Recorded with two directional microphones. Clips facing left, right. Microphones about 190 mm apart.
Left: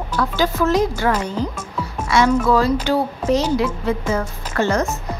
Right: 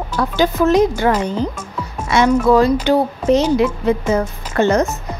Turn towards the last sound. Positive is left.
turn(degrees=-20)  # may be behind; listen again after turning